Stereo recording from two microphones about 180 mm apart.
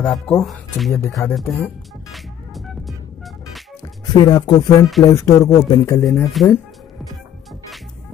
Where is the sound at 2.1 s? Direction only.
Centre (ahead or behind).